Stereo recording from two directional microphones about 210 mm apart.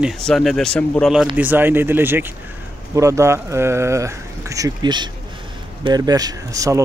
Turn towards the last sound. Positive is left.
turn(degrees=-15)  # may be behind; listen again after turning